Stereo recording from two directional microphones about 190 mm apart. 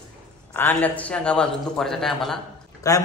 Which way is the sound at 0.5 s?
10° left (ahead or behind).